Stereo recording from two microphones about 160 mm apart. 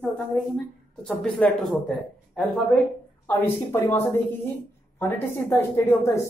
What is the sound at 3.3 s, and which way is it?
Speech, 15° left (ahead or behind).